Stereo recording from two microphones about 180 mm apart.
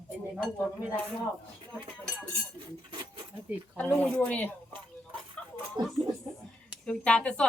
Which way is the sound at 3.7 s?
10° left (ahead or behind).